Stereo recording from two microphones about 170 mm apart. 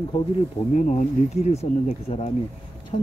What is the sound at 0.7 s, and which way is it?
Speech, 45° left (ahead or behind).